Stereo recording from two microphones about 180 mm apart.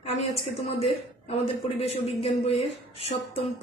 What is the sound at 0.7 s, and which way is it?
Speech, 35° left (ahead or behind).